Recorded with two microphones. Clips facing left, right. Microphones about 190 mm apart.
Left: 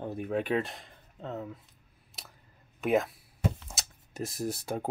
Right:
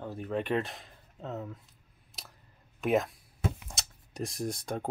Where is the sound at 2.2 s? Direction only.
Centre (ahead or behind).